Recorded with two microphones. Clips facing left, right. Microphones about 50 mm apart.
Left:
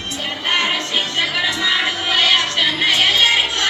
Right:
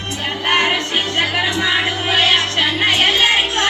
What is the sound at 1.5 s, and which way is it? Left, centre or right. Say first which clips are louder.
Music: right 1 dB; right.